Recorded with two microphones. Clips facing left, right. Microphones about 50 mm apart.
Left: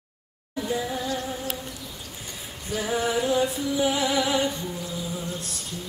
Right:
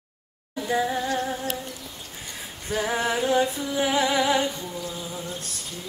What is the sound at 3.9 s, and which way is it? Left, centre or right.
Music, right.